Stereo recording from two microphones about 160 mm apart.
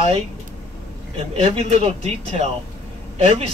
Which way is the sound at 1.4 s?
40° right (ahead or behind).